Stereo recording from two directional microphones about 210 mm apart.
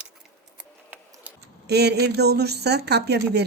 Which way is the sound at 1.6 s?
50° right (ahead or behind).